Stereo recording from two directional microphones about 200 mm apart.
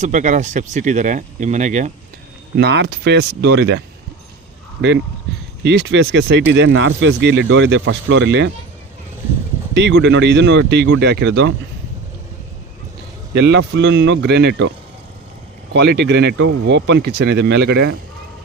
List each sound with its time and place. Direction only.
0.0 s speech: 40° right (ahead or behind)
2.6 s speech: 55° right (ahead or behind)
5.6 s speech: 60° right (ahead or behind)
9.7 s speech: 65° right (ahead or behind)
13.3 s speech: 60° right (ahead or behind)
15.7 s speech: 60° right (ahead or behind)